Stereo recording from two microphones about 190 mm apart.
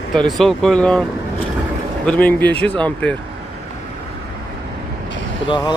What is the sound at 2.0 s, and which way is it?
Speech, 10° left (ahead or behind).